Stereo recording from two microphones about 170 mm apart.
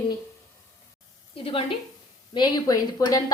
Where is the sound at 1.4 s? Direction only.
35° left (ahead or behind).